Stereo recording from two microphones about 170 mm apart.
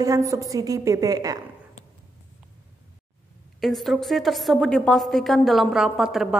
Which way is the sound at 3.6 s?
Centre (ahead or behind).